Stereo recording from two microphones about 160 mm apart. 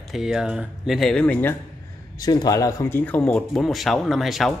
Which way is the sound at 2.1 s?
25° left (ahead or behind).